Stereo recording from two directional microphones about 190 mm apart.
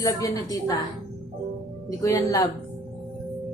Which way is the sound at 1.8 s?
15° left (ahead or behind).